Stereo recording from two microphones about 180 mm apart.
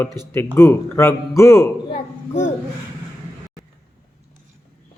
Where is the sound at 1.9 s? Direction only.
40° left (ahead or behind).